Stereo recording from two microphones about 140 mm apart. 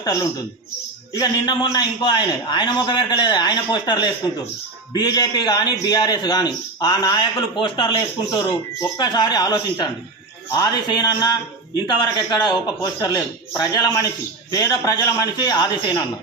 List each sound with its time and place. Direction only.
0.0 s a woman's voice: 25° left (ahead or behind)